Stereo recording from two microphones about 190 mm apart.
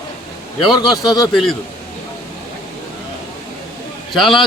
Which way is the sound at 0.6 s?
25° left (ahead or behind).